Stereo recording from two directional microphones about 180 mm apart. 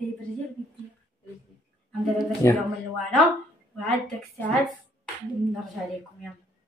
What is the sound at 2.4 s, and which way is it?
Speech, 15° left (ahead or behind).